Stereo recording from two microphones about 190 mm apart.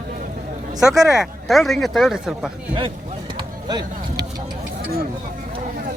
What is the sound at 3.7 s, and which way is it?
Speech, 20° right (ahead or behind).